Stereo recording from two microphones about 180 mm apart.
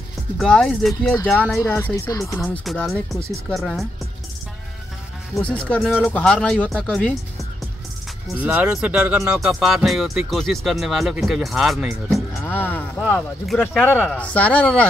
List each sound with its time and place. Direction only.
0.4 s speech: 5° left (ahead or behind)
1.6 s speech: 15° left (ahead or behind)
2.6 s speech: centre (ahead or behind)
5.3 s speech: 5° left (ahead or behind)
8.4 s speech: 5° right (ahead or behind)
12.4 s speech: 10° left (ahead or behind)